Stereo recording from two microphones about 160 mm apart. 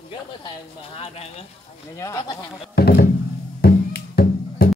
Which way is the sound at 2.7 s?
80° left.